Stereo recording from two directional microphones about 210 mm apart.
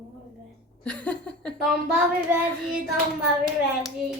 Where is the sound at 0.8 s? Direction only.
5° left (ahead or behind).